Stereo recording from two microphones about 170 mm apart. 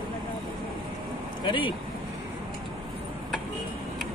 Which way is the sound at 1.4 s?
30° left (ahead or behind).